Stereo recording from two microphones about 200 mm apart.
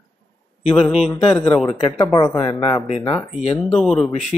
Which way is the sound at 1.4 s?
5° left (ahead or behind).